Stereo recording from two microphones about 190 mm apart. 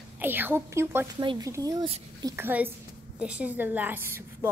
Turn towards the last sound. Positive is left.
turn(degrees=-10)  # may be behind; listen again after turning